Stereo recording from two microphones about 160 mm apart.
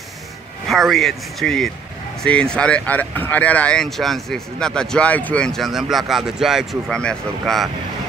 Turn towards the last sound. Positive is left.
turn(degrees=5)  # may be behind; listen again after turning